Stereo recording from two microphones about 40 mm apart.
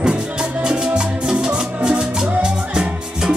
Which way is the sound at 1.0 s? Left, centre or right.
Centre.